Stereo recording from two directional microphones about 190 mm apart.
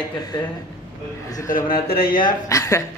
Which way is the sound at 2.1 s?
20° left (ahead or behind).